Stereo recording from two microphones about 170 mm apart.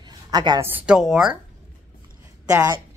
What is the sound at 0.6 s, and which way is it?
Speech, 10° right (ahead or behind).